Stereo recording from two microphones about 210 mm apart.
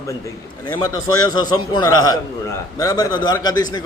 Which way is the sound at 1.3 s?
20° left (ahead or behind).